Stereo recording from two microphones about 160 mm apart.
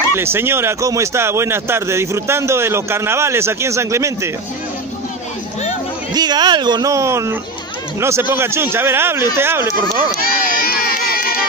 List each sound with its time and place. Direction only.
0.1 s speech: 15° right (ahead or behind)
6.1 s speech: 25° right (ahead or behind)
10.2 s crowd: 65° left (ahead or behind)